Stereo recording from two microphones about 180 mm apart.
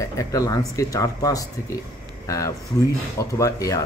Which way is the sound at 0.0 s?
20° left (ahead or behind).